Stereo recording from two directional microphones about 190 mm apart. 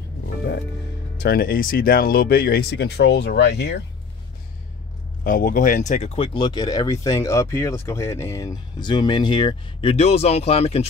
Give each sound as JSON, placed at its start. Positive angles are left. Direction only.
{"t": 1.2, "sound": "speech", "side_deg": 55}
{"t": 5.2, "sound": "speech", "side_deg": 45}